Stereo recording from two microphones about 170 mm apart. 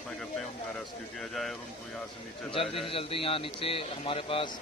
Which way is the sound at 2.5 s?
35° left (ahead or behind).